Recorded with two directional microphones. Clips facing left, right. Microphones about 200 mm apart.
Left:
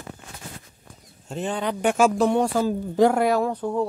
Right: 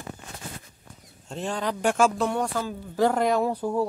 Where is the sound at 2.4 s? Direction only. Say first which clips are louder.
Left 7 dB; 30° left (ahead or behind).